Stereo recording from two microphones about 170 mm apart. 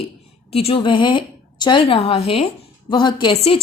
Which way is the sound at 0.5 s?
35° left (ahead or behind).